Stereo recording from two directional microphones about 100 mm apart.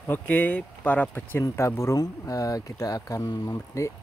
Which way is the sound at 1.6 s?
30° left (ahead or behind).